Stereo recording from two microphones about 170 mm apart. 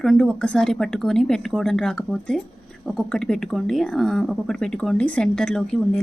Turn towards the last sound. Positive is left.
turn(degrees=5)  # may be behind; listen again after turning